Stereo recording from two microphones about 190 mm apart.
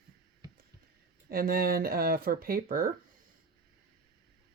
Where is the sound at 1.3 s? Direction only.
50° right (ahead or behind).